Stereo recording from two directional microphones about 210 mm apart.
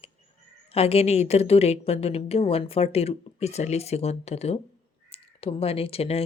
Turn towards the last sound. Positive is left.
turn(degrees=30)  # may be behind; listen again after turning